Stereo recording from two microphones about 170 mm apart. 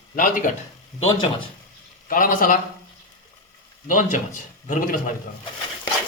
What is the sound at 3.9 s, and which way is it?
Speech, 50° left (ahead or behind).